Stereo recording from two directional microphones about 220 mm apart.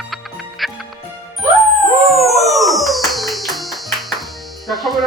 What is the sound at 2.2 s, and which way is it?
Music, centre (ahead or behind).